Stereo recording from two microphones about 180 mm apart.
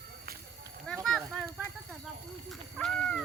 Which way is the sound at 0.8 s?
5° left (ahead or behind).